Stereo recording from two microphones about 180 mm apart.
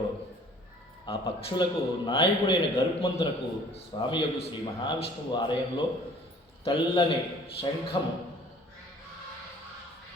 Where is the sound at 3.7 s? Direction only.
35° left (ahead or behind).